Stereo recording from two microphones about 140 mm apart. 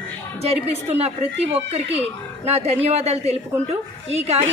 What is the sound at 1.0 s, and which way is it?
A man's voice, 45° right (ahead or behind).